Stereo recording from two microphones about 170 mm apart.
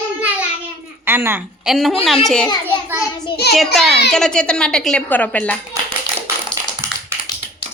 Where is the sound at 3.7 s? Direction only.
Centre (ahead or behind).